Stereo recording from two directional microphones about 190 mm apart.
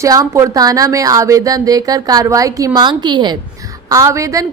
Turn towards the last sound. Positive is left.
turn(degrees=-15)  # may be behind; listen again after turning